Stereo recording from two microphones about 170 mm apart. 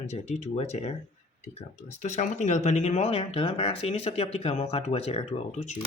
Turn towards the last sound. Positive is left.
turn(degrees=40)  # may be behind; listen again after turning